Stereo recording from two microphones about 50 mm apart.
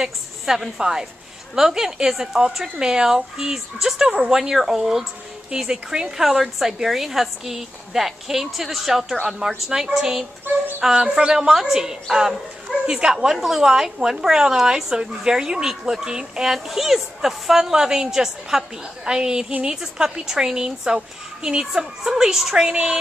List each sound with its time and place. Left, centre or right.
0.0 s a woman's voice: centre
10.9 s a sound: centre
11.6 s a woman's voice: centre